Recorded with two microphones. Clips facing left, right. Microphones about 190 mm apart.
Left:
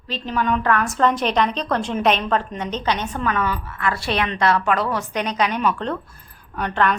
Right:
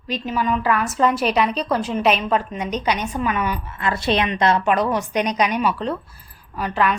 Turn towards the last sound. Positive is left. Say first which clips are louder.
# even
turn(degrees=-5)  # may be behind; listen again after turning